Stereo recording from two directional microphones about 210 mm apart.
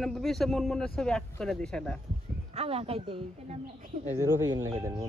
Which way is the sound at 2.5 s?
30° right (ahead or behind).